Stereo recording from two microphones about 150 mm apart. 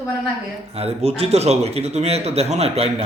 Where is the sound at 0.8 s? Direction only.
40° right (ahead or behind).